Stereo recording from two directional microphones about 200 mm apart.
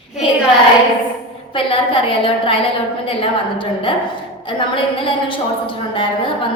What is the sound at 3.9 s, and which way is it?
A woman's voice, 25° left (ahead or behind).